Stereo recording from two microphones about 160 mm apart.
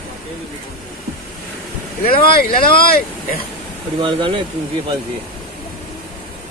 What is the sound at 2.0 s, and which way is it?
A man's voice, 65° left (ahead or behind).